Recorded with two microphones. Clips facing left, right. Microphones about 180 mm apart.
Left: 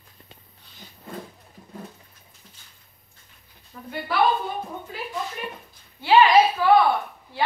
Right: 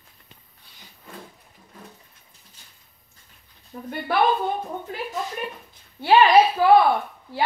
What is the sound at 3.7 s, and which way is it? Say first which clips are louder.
Speech: right 5 dB; 35° right (ahead or behind).